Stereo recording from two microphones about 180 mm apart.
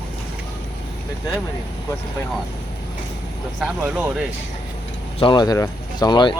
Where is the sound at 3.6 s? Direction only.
5° right (ahead or behind).